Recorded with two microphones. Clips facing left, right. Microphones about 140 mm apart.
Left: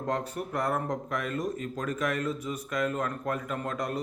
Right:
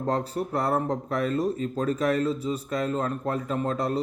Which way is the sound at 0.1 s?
35° right (ahead or behind).